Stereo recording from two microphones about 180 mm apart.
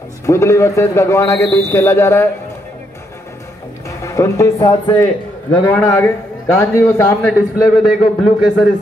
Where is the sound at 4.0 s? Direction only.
15° left (ahead or behind).